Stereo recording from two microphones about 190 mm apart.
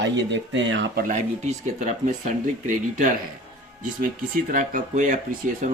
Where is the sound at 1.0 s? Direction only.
40° right (ahead or behind).